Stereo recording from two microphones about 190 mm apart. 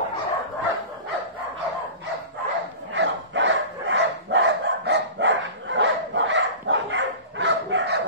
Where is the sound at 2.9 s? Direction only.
70° right (ahead or behind).